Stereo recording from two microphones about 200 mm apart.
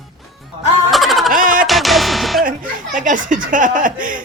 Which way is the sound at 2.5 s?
40° right (ahead or behind).